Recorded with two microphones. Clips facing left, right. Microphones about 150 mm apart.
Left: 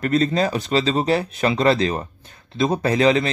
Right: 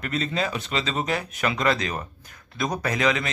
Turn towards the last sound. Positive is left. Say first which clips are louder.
# left 7 dB
turn(degrees=30)  # may be behind; listen again after turning